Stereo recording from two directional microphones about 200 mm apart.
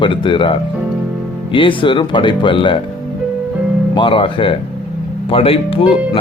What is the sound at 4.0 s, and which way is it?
Speech, 25° left (ahead or behind).